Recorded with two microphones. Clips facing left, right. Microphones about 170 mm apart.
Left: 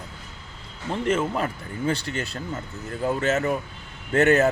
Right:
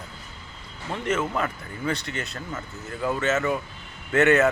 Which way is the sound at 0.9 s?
30° left (ahead or behind).